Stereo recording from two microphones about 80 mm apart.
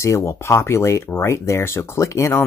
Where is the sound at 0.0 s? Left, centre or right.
Left.